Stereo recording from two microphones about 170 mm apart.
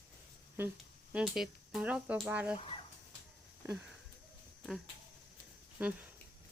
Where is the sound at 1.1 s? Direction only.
5° right (ahead or behind).